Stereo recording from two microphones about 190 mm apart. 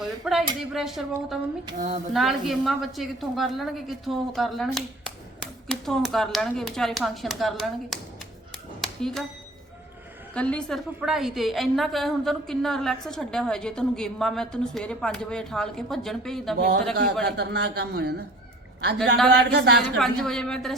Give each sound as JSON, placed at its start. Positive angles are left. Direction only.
{"t": 0.0, "sound": "a woman's voice", "side_deg": 0}
{"t": 1.7, "sound": "a sound", "side_deg": -25}
{"t": 2.1, "sound": "a woman's voice", "side_deg": 0}
{"t": 8.8, "sound": "a sound", "side_deg": 0}
{"t": 10.3, "sound": "a woman's voice", "side_deg": 5}
{"t": 16.6, "sound": "a man's voice", "side_deg": -60}
{"t": 19.3, "sound": "a man's voice", "side_deg": -60}
{"t": 20.0, "sound": "a woman's voice", "side_deg": 0}